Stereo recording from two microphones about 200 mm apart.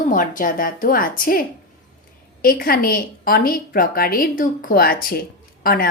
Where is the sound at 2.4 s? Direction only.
45° left (ahead or behind).